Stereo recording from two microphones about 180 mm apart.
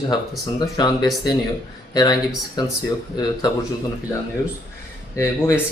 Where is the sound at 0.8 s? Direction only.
20° left (ahead or behind).